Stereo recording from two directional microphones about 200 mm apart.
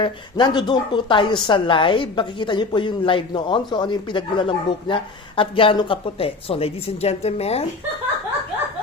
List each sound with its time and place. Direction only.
0.0 s a woman's voice: 25° left (ahead or behind)